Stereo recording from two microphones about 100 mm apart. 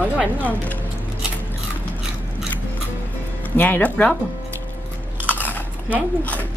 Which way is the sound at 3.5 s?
20° left (ahead or behind).